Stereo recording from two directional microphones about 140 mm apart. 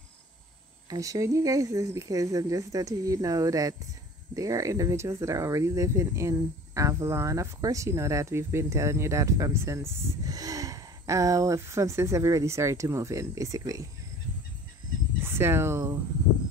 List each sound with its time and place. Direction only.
0.8 s speech: 25° right (ahead or behind)
15.2 s speech: 15° right (ahead or behind)